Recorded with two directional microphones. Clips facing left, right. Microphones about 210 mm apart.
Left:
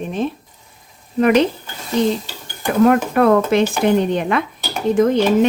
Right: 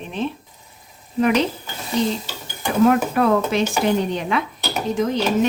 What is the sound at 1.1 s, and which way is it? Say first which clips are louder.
Dishes: left 4 dB; 55° left (ahead or behind).